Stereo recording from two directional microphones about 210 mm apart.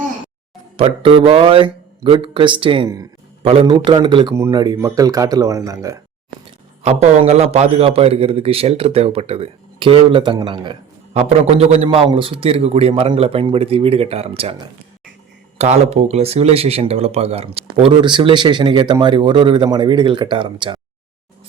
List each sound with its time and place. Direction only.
0.8 s a man's voice: 25° right (ahead or behind)
6.8 s a man's voice: 30° right (ahead or behind)
15.5 s a man's voice: 30° right (ahead or behind)